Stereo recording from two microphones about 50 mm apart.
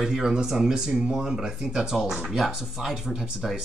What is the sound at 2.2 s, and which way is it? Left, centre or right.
Speech, centre.